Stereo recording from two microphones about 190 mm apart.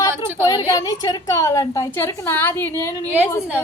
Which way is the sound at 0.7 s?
20° left (ahead or behind).